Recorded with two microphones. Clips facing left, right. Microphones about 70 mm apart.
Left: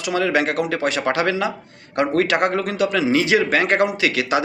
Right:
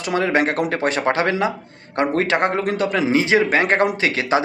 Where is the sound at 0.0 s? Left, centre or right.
Right.